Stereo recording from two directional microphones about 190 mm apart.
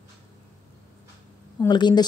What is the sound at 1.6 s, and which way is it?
Speech, 20° left (ahead or behind).